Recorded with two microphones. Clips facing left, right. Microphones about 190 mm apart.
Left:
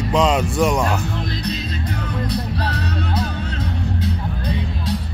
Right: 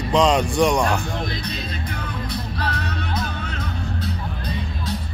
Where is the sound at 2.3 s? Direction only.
35° left (ahead or behind).